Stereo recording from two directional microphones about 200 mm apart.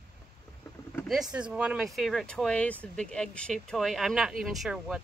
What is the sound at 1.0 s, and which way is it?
Speech, centre (ahead or behind).